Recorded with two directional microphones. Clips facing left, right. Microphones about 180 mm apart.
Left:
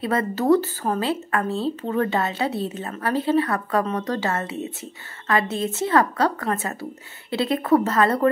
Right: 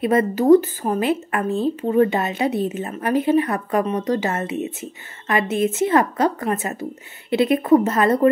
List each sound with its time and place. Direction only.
0.0 s a woman's voice: 20° right (ahead or behind)